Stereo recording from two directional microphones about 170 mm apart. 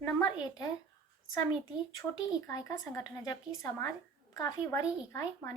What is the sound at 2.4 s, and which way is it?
Speech, 20° left (ahead or behind).